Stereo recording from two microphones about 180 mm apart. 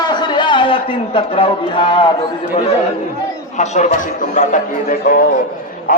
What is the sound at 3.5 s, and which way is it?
A man's voice, 40° left (ahead or behind).